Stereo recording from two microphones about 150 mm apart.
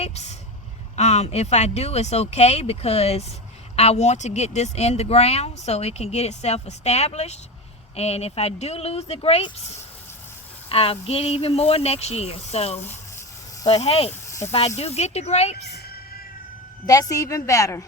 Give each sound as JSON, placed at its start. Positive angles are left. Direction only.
{"t": 0.0, "sound": "vehicle", "side_deg": 45}
{"t": 0.9, "sound": "speech", "side_deg": 45}
{"t": 12.9, "sound": "a sound", "side_deg": 15}
{"t": 13.7, "sound": "speech", "side_deg": 45}
{"t": 14.1, "sound": "snake", "side_deg": 20}
{"t": 14.4, "sound": "speech", "side_deg": 45}
{"t": 16.8, "sound": "a woman's voice", "side_deg": 25}